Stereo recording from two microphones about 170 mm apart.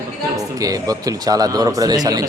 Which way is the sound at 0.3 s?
20° right (ahead or behind).